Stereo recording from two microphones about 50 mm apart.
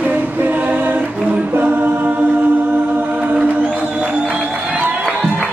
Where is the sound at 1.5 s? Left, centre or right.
Right.